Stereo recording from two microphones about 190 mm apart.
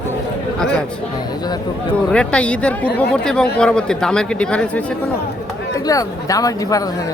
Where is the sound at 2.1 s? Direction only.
5° left (ahead or behind).